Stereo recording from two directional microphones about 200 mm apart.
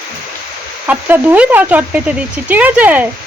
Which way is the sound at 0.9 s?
10° right (ahead or behind).